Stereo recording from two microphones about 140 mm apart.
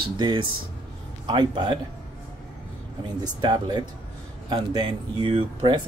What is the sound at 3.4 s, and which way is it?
Speech, 30° right (ahead or behind).